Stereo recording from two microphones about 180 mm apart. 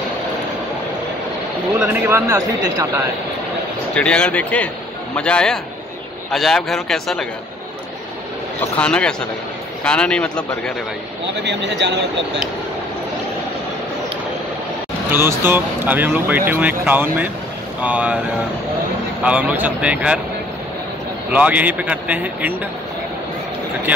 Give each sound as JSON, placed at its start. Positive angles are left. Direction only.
{"t": 1.8, "sound": "speech", "side_deg": -15}
{"t": 3.9, "sound": "a man's voice", "side_deg": 5}
{"t": 8.5, "sound": "a man's voice", "side_deg": 5}
{"t": 11.4, "sound": "speech", "side_deg": -75}
{"t": 15.0, "sound": "speech", "side_deg": -10}
{"t": 19.2, "sound": "speech", "side_deg": -5}
{"t": 21.3, "sound": "speech", "side_deg": -10}